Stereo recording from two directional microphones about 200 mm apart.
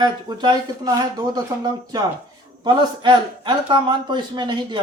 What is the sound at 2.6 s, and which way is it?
A man's voice, 20° right (ahead or behind).